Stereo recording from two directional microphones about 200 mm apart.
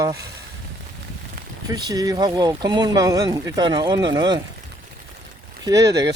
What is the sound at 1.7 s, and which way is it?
Speech, 20° right (ahead or behind).